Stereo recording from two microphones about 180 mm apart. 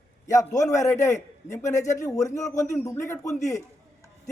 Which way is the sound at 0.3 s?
20° left (ahead or behind).